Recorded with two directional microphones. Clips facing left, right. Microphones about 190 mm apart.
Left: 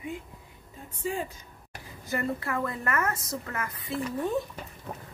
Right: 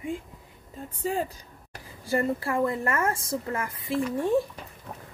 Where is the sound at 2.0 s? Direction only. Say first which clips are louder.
Right 4 dB; 30° right (ahead or behind).